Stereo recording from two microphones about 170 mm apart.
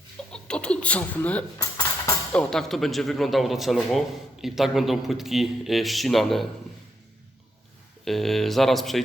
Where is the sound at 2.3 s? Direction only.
5° left (ahead or behind).